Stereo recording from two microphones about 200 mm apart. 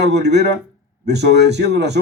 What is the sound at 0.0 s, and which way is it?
A man's voice, 55° right (ahead or behind).